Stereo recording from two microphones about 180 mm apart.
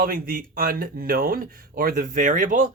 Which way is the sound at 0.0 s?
55° right (ahead or behind).